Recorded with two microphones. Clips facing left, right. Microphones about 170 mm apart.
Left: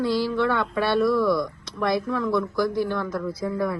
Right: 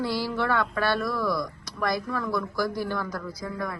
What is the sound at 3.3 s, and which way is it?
Speech, 30° left (ahead or behind).